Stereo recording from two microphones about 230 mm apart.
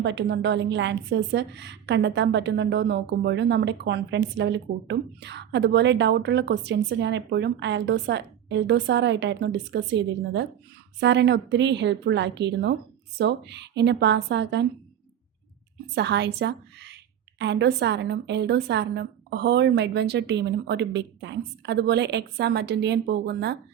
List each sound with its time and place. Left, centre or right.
0.0 s a woman's voice: right
16.0 s a woman's voice: right